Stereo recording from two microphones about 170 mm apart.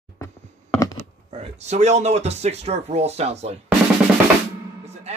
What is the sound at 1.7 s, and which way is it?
Speech, 40° right (ahead or behind).